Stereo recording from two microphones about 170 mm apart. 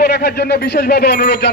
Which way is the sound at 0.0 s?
75° left (ahead or behind).